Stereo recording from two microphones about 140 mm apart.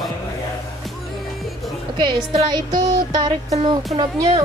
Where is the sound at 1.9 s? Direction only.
30° right (ahead or behind).